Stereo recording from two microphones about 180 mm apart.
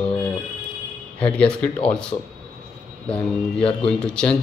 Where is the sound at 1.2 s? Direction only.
5° left (ahead or behind).